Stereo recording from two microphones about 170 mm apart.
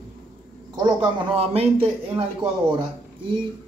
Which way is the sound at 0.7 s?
25° right (ahead or behind).